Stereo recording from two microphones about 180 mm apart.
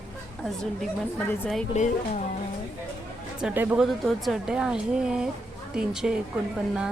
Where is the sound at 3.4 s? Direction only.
10° right (ahead or behind).